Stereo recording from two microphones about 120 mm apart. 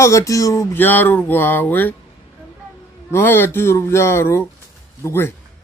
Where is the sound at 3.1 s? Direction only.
20° left (ahead or behind).